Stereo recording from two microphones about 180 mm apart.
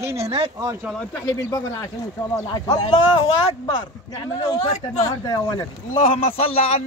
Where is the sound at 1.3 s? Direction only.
20° left (ahead or behind).